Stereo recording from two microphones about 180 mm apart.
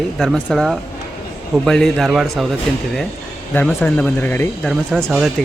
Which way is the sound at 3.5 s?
10° left (ahead or behind).